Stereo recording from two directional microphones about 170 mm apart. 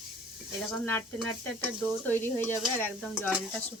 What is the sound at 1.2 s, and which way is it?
Speech, centre (ahead or behind).